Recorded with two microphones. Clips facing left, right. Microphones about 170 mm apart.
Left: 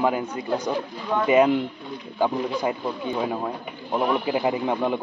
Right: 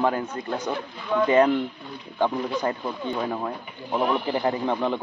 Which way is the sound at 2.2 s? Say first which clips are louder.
Left 1 dB; 10° left (ahead or behind).